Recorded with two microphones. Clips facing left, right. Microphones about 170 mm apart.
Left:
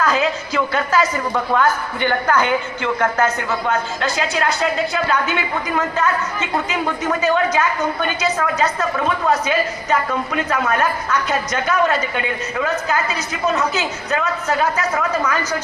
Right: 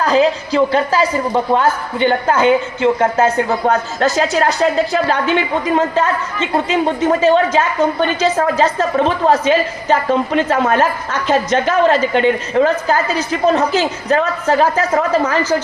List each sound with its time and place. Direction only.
0.0 s a woman's voice: 35° right (ahead or behind)